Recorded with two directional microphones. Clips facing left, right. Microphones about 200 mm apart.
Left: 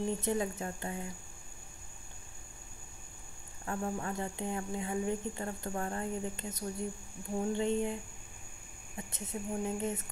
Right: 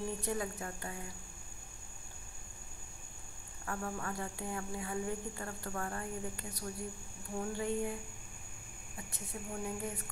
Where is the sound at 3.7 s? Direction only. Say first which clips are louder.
Left 4 dB; 20° left (ahead or behind).